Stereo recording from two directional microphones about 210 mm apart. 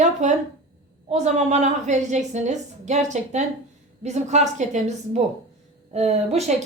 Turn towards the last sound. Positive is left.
turn(degrees=-30)  # may be behind; listen again after turning